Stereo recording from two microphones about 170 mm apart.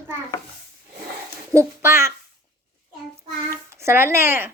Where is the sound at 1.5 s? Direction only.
15° right (ahead or behind).